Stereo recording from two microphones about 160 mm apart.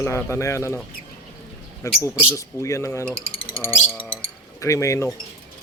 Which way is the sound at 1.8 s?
20° left (ahead or behind).